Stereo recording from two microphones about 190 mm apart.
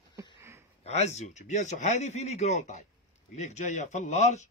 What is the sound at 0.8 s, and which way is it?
A man's voice, 35° left (ahead or behind).